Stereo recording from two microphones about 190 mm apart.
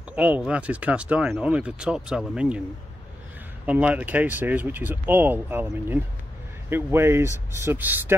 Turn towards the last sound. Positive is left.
turn(degrees=-10)  # may be behind; listen again after turning